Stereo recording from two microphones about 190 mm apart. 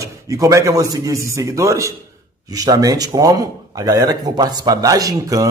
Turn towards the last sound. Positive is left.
turn(degrees=-20)  # may be behind; listen again after turning